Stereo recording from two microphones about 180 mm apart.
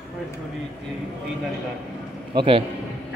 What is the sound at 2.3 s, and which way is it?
Speech, 25° right (ahead or behind).